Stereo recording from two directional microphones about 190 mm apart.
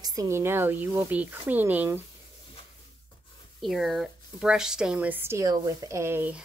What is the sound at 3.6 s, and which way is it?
A woman's voice, centre (ahead or behind).